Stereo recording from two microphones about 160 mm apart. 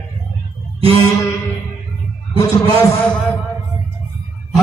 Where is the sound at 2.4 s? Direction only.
20° left (ahead or behind).